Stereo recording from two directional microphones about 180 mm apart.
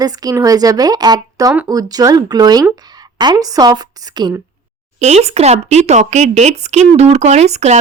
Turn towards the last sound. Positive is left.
turn(degrees=-35)  # may be behind; listen again after turning